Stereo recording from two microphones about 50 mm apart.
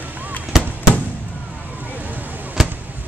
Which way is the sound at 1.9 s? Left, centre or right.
Right.